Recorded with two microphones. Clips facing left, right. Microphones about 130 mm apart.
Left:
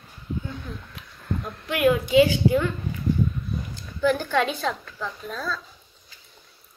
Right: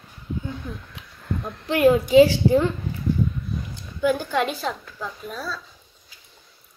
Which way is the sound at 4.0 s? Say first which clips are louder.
Even; 15° right (ahead or behind).